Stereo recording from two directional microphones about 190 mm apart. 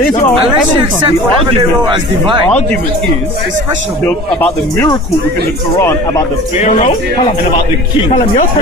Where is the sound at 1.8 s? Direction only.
25° right (ahead or behind).